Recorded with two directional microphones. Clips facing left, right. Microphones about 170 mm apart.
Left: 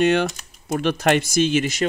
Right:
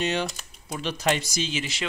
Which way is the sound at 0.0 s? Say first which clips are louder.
Left 9 dB; 55° left (ahead or behind).